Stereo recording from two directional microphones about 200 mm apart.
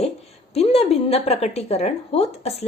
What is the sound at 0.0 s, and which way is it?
A woman's voice, 30° left (ahead or behind).